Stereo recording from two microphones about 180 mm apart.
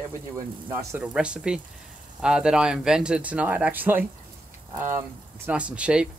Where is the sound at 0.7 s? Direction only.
10° right (ahead or behind).